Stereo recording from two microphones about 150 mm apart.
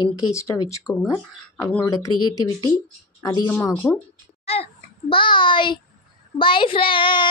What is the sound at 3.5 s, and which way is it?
Speech, 10° left (ahead or behind).